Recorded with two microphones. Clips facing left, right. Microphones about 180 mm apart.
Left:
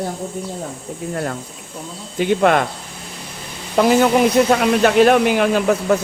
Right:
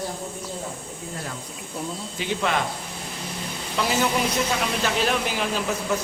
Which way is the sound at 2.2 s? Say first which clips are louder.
Left 11 dB; 55° left (ahead or behind).